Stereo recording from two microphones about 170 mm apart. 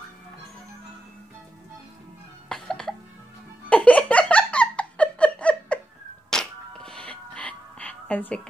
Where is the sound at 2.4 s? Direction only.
5° left (ahead or behind).